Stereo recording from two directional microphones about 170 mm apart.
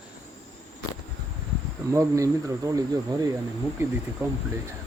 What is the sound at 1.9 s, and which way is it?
Speech, 20° right (ahead or behind).